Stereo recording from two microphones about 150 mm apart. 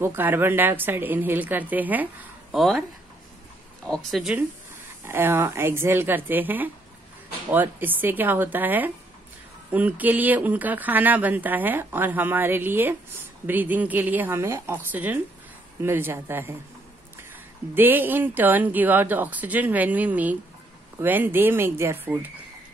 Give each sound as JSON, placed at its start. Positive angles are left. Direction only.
{"t": 0.0, "sound": "speech", "side_deg": -15}
{"t": 2.5, "sound": "speech", "side_deg": 0}
{"t": 3.8, "sound": "speech", "side_deg": 5}
{"t": 5.0, "sound": "speech", "side_deg": -15}
{"t": 17.7, "sound": "speech", "side_deg": -15}